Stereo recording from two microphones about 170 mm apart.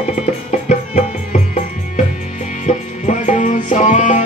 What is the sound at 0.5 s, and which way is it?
Music, 40° left (ahead or behind).